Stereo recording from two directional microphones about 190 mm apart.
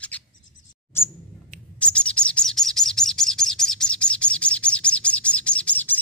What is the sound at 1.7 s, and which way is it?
Bird, 5° left (ahead or behind).